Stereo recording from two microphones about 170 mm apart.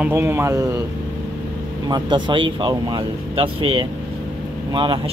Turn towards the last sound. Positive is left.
turn(degrees=-30)  # may be behind; listen again after turning